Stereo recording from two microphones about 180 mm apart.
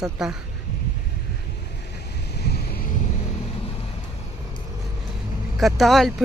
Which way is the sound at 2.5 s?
60° left (ahead or behind).